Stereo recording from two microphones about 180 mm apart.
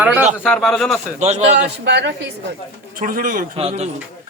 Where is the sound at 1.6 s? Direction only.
70° right (ahead or behind).